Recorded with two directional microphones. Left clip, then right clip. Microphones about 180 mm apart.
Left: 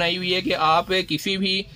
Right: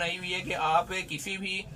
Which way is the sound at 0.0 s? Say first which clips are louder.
Left 9 dB; 35° left (ahead or behind).